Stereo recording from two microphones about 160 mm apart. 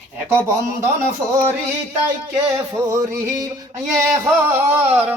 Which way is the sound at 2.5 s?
15° right (ahead or behind).